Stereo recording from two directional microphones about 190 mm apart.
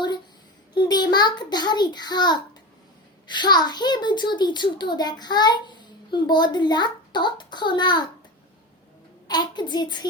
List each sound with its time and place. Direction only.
0.7 s a child's voice: 20° left (ahead or behind)
9.2 s a child's voice: 20° left (ahead or behind)